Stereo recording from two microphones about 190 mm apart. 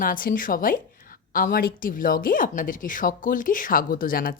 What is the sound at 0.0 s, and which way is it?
A woman's voice, 45° left (ahead or behind).